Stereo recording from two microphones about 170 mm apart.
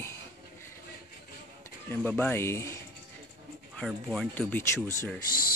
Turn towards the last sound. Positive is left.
turn(degrees=15)  # may be behind; listen again after turning